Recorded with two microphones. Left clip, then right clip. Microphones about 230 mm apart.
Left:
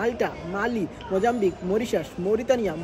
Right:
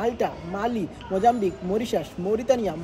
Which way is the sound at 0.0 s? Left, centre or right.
Right.